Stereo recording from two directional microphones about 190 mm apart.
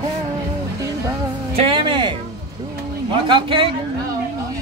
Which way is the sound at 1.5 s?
25° right (ahead or behind).